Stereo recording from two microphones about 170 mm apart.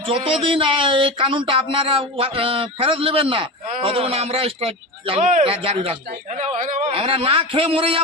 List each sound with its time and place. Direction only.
0.0 s a man's voice: 30° right (ahead or behind)
5.2 s a man's voice: 50° right (ahead or behind)
5.5 s a man's voice: 35° right (ahead or behind)
6.3 s a man's voice: 45° right (ahead or behind)
6.9 s a man's voice: 30° right (ahead or behind)